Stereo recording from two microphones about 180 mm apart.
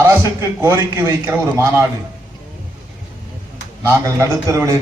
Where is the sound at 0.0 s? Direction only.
15° right (ahead or behind).